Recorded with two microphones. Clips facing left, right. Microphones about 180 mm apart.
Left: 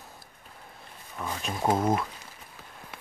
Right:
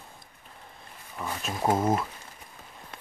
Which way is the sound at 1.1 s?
5° right (ahead or behind).